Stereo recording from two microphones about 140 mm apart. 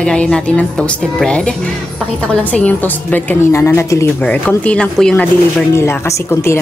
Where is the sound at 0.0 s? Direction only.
5° left (ahead or behind).